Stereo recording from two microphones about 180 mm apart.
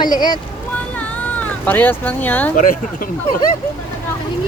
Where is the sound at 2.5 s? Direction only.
50° left (ahead or behind).